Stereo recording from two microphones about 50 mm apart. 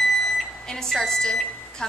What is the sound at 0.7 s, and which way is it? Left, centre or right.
A woman's voice, centre.